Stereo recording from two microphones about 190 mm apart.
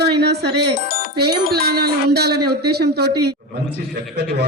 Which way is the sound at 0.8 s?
50° left (ahead or behind).